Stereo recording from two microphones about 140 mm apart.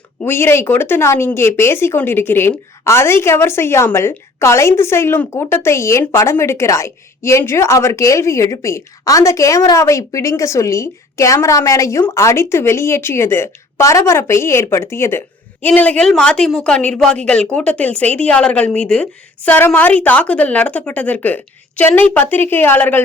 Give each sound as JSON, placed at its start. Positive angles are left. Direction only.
{"t": 0.2, "sound": "speech", "side_deg": 15}